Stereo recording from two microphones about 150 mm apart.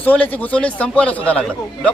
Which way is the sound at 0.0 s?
10° left (ahead or behind).